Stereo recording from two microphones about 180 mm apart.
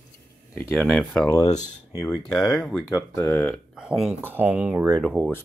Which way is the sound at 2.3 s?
Centre (ahead or behind).